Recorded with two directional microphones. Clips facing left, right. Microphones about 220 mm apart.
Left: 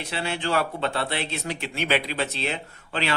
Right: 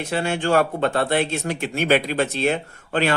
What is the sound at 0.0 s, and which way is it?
Speech, 50° right (ahead or behind).